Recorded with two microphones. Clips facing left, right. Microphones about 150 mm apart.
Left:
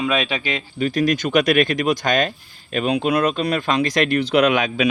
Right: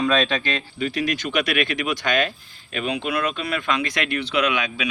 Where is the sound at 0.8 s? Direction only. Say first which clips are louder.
Left 6 dB; 45° left (ahead or behind).